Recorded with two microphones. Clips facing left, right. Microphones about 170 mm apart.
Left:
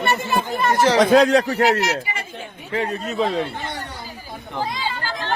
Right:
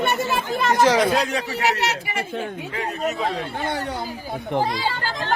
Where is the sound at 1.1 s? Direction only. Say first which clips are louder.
Left 9 dB; 90° left.